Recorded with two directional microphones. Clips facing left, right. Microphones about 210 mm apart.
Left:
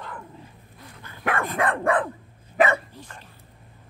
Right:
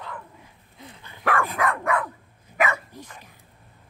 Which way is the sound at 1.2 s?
25° left (ahead or behind).